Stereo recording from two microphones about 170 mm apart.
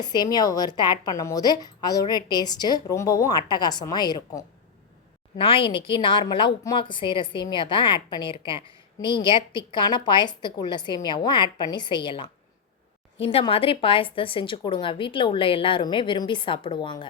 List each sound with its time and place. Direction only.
0.0 s a woman's voice: 25° left (ahead or behind)